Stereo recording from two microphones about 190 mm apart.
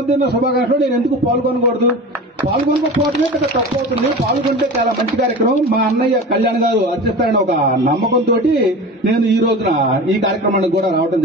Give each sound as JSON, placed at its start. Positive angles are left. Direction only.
{"t": 5.7, "sound": "a man's voice", "side_deg": -55}